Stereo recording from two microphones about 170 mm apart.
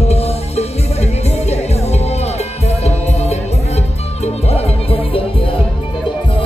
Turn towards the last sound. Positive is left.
turn(degrees=35)  # may be behind; listen again after turning